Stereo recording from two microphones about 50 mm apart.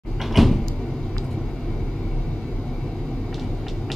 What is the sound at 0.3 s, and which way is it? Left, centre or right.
Cupboard open or close, centre.